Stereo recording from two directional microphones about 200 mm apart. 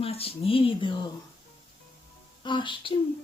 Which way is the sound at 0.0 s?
30° left (ahead or behind).